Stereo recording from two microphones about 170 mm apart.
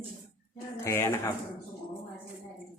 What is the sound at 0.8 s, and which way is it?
Speech, 15° left (ahead or behind).